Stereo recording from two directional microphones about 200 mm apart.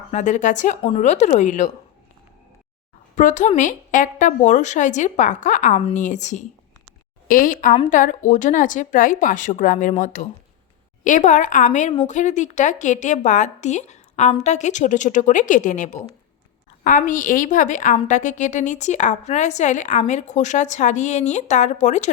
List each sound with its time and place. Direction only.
0.1 s a woman's voice: 35° left (ahead or behind)
3.2 s a woman's voice: 40° left (ahead or behind)